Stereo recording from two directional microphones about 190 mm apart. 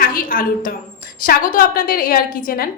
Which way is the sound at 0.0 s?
50° left (ahead or behind).